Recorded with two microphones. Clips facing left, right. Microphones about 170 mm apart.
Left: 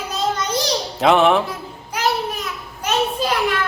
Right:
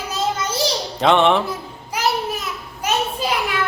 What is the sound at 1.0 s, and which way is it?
Speech, 5° left (ahead or behind).